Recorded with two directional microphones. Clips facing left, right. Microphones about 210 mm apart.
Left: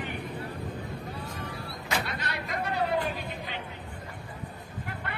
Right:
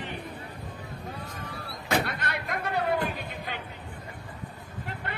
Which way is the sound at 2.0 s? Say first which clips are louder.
Right 3 dB; 55° right (ahead or behind).